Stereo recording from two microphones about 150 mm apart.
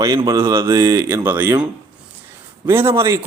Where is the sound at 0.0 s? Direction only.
25° right (ahead or behind).